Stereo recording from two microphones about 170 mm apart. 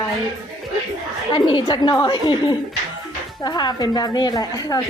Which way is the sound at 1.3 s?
30° left (ahead or behind).